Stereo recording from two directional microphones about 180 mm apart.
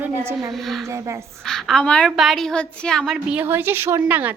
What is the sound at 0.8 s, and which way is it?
Speech, 15° right (ahead or behind).